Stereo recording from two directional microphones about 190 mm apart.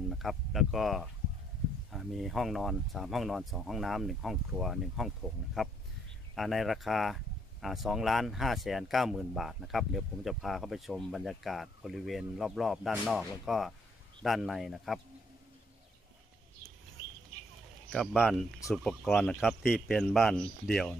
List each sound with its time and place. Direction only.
0.1 s speech: centre (ahead or behind)
17.9 s speech: centre (ahead or behind)